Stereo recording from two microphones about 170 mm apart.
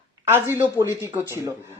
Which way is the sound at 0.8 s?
15° right (ahead or behind).